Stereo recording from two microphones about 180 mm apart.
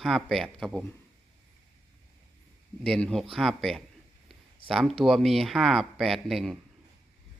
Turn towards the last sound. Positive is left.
turn(degrees=0)  # may be behind; listen again after turning